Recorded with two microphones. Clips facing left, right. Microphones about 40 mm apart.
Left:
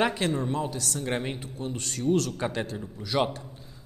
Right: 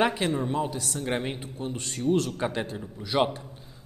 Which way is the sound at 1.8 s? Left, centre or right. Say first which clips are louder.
Even; right.